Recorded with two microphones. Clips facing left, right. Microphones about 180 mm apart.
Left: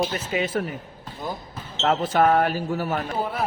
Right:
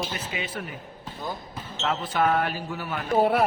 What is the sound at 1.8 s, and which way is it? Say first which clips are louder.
A man's voice: left 5 dB; 45° left (ahead or behind).